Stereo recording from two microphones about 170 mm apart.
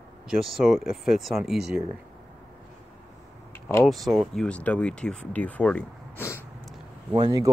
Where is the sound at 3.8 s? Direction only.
Centre (ahead or behind).